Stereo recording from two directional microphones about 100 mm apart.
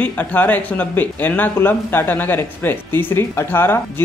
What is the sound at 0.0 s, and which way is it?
Speech, 15° left (ahead or behind).